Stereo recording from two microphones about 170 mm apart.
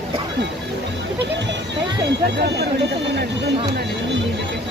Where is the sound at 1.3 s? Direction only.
90° right.